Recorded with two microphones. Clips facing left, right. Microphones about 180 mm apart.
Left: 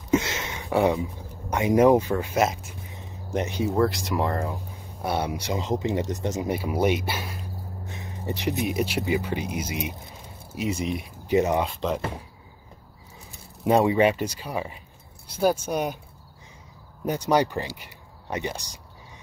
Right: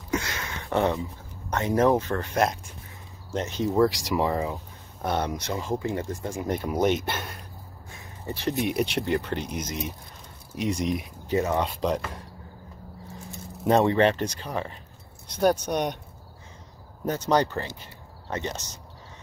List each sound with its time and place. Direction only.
0.1 s a sound: 20° left (ahead or behind)
0.7 s speech: 10° left (ahead or behind)
3.3 s speech: 15° left (ahead or behind)
3.7 s speech: centre (ahead or behind); by 6.5 s 20° left (ahead or behind)
6.5 s speech: 5° left (ahead or behind)
7.1 s a sound: 5° left (ahead or behind)
7.8 s a sound: 20° left (ahead or behind)
8.5 s speech: centre (ahead or behind)
11.2 s speech: 15° left (ahead or behind)
11.6 s speech: 5° left (ahead or behind)
13.7 s speech: 10° left (ahead or behind)
17.0 s speech: 10° left (ahead or behind)